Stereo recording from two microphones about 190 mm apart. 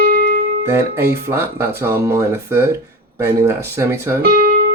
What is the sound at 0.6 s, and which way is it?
Speech, 15° right (ahead or behind).